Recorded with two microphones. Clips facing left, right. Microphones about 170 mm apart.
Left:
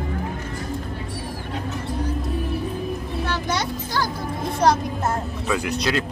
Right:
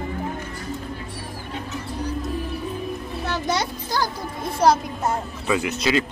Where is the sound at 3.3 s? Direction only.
15° right (ahead or behind).